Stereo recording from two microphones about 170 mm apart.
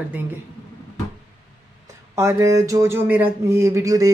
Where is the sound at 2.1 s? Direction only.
15° right (ahead or behind).